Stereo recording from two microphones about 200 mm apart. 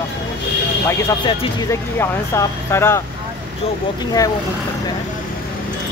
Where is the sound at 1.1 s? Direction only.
25° left (ahead or behind).